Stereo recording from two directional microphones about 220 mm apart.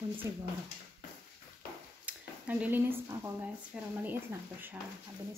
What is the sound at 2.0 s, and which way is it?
Speech, 5° right (ahead or behind).